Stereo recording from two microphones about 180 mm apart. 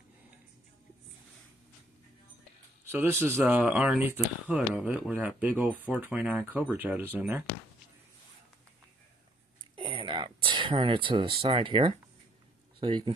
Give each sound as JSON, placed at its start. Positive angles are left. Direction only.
{"t": 2.8, "sound": "speech", "side_deg": -15}
{"t": 9.8, "sound": "a sound", "side_deg": -30}
{"t": 11.4, "sound": "speech", "side_deg": -25}